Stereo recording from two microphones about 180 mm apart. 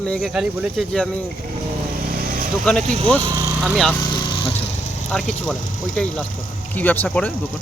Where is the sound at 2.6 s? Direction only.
5° left (ahead or behind).